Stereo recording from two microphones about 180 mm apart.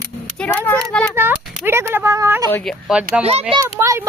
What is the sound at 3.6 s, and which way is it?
Speech, 15° right (ahead or behind).